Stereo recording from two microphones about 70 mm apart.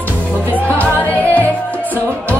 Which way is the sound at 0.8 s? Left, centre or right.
Left.